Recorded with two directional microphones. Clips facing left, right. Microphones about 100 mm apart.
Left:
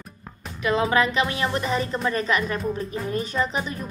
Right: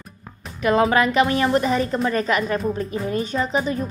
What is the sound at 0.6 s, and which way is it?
A woman's voice, 40° right (ahead or behind).